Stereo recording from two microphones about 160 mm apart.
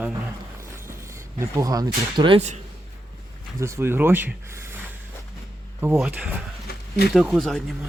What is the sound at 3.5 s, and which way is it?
Speech, 15° right (ahead or behind).